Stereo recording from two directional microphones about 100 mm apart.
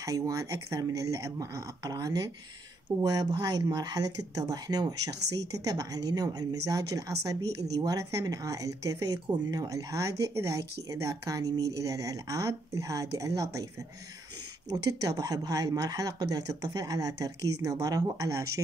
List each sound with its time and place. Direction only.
0.0 s speech: 35° right (ahead or behind)
14.7 s speech: 40° right (ahead or behind)